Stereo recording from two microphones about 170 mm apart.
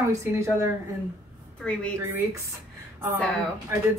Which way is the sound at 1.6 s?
5° left (ahead or behind).